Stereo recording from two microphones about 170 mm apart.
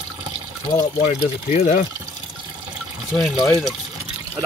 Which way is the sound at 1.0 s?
40° left (ahead or behind).